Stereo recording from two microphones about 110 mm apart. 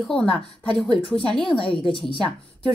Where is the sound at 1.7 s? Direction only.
50° left (ahead or behind).